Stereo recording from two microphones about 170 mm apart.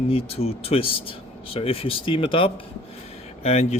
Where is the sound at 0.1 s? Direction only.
35° left (ahead or behind).